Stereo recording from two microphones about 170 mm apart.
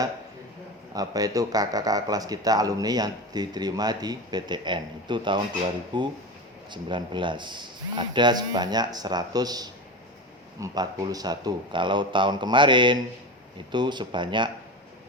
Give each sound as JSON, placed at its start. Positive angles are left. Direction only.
{"t": 0.9, "sound": "speech", "side_deg": -20}